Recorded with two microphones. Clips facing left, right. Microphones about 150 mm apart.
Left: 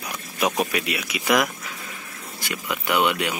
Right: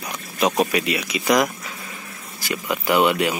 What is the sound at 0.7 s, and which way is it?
Speech, centre (ahead or behind).